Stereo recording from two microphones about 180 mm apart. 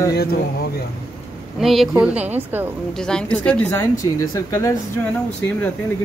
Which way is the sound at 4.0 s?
20° left (ahead or behind).